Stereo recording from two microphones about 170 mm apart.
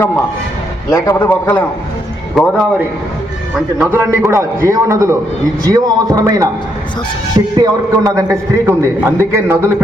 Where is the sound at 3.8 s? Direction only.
15° right (ahead or behind).